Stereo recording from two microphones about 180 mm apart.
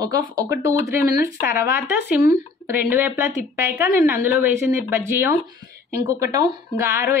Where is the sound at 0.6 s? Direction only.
15° right (ahead or behind).